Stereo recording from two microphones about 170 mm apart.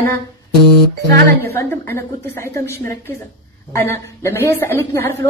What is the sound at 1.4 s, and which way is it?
A woman's voice, 15° left (ahead or behind).